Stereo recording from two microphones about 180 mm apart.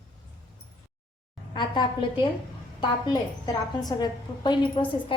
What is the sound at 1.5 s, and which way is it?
A woman's voice, 25° left (ahead or behind).